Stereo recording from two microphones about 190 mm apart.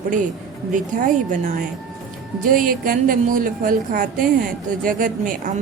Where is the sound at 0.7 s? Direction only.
45° right (ahead or behind).